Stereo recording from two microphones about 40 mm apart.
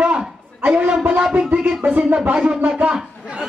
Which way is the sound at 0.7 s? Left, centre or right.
Right.